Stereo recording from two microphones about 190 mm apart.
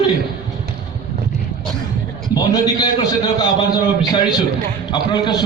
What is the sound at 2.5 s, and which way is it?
A man's voice, 20° left (ahead or behind).